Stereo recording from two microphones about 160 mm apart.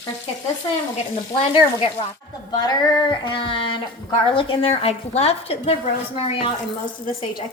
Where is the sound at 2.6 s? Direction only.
30° left (ahead or behind).